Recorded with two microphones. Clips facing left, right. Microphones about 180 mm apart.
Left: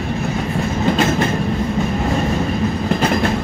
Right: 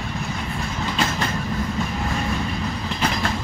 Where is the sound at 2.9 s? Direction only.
55° left (ahead or behind).